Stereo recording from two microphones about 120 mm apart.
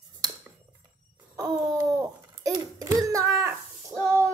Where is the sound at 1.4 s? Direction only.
30° right (ahead or behind).